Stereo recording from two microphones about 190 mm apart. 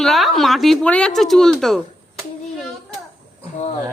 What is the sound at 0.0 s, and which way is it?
Speech, centre (ahead or behind).